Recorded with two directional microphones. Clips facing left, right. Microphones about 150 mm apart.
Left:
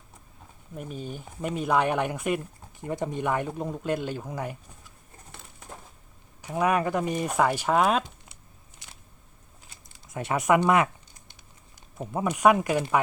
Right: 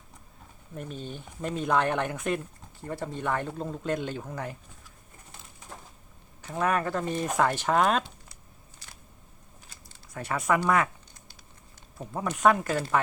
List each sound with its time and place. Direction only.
0.8 s speech: 10° left (ahead or behind)
6.4 s speech: 10° left (ahead or behind)
9.9 s speech: 20° left (ahead or behind)
11.9 s speech: 15° left (ahead or behind)